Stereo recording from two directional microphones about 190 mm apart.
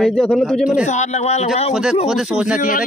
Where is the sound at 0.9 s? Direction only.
35° left (ahead or behind).